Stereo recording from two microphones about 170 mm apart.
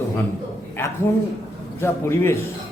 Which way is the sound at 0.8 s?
15° left (ahead or behind).